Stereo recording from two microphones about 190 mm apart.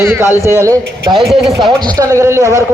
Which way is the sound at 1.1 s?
25° right (ahead or behind).